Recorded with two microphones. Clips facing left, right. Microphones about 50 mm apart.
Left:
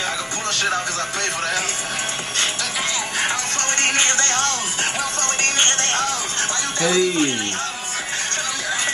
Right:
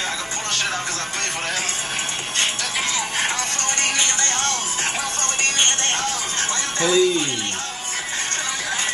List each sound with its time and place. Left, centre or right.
3.8 s music: left
6.9 s a man's voice: left